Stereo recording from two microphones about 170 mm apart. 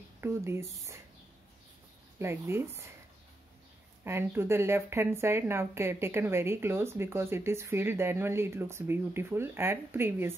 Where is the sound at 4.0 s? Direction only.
15° right (ahead or behind).